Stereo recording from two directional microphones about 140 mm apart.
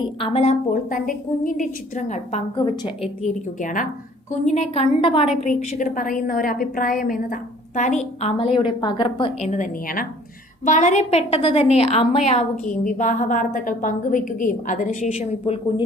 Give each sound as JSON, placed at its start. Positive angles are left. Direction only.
{"t": 0.2, "sound": "a woman's voice", "side_deg": 50}
{"t": 0.7, "sound": "a woman's voice", "side_deg": 75}
{"t": 3.0, "sound": "speech", "side_deg": 0}
{"t": 3.6, "sound": "a woman's voice", "side_deg": 70}
{"t": 4.3, "sound": "a woman's voice", "side_deg": 55}
{"t": 5.4, "sound": "a woman's voice", "side_deg": 60}
{"t": 7.8, "sound": "a woman's voice", "side_deg": 60}
{"t": 8.4, "sound": "a woman's voice", "side_deg": 40}
{"t": 9.5, "sound": "a woman's voice", "side_deg": 70}
{"t": 10.7, "sound": "a woman's voice", "side_deg": 60}